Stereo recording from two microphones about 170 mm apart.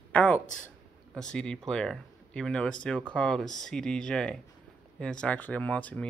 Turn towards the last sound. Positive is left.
turn(degrees=10)  # may be behind; listen again after turning